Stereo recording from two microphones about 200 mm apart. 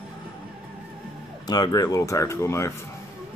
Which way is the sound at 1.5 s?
20° left (ahead or behind).